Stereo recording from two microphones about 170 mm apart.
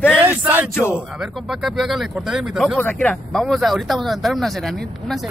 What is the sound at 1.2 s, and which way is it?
Speech, centre (ahead or behind).